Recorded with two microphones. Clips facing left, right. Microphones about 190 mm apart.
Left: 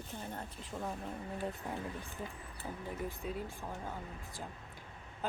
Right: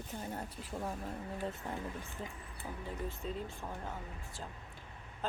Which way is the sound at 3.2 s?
10° left (ahead or behind).